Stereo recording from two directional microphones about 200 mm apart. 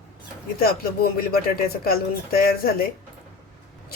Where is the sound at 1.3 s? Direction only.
50° left (ahead or behind).